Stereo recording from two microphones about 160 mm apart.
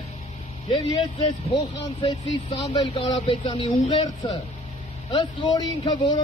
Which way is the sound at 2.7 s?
25° left (ahead or behind).